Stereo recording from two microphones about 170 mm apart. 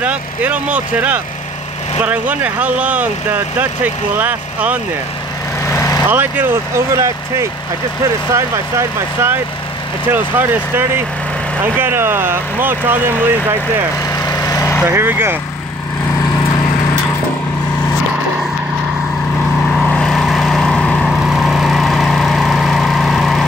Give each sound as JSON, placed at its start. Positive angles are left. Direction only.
{"t": 0.0, "sound": "speech", "side_deg": -10}
{"t": 5.7, "sound": "vehicle", "side_deg": 20}
{"t": 6.0, "sound": "speech", "side_deg": -10}
{"t": 14.1, "sound": "vehicle", "side_deg": 20}
{"t": 14.9, "sound": "speech", "side_deg": -15}
{"t": 19.9, "sound": "vehicle", "side_deg": 5}